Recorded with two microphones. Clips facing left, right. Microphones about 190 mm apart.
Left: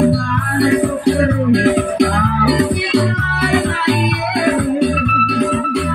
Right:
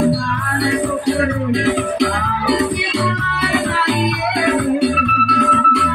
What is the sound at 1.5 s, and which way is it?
Music, 50° left (ahead or behind).